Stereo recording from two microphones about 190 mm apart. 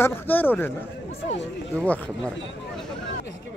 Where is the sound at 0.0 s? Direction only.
10° left (ahead or behind).